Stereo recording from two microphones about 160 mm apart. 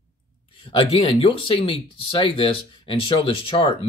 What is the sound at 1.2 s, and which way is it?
Speech, 35° left (ahead or behind).